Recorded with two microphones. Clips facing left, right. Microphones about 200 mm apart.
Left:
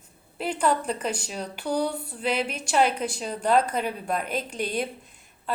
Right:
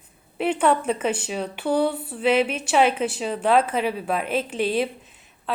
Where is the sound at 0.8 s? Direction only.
5° right (ahead or behind).